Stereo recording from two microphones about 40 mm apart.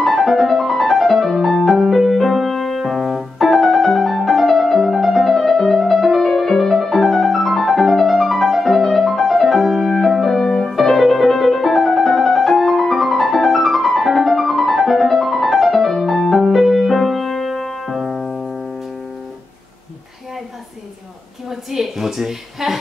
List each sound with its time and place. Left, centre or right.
0.0 s music: centre
10.4 s music: centre
10.7 s music: centre
21.5 s a sound: centre